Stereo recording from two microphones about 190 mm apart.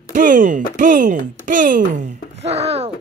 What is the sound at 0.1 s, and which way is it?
Speech, 45° right (ahead or behind).